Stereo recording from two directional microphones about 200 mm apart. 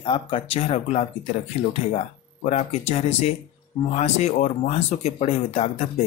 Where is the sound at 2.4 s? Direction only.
35° left (ahead or behind).